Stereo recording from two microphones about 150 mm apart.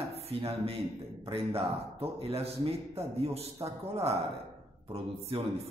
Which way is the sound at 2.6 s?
40° right (ahead or behind).